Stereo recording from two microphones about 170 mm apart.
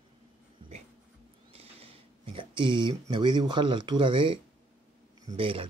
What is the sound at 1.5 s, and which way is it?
Speech, 35° right (ahead or behind).